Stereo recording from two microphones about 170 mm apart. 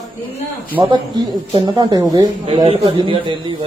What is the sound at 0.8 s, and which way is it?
Speech, 30° right (ahead or behind).